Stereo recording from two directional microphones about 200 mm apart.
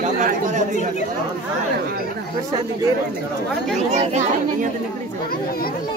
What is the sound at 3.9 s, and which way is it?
Speech, 35° right (ahead or behind).